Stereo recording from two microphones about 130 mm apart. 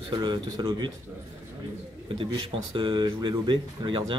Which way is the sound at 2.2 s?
40° right (ahead or behind).